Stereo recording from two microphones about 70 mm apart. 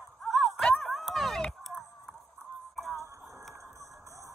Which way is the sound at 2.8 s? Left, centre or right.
Centre.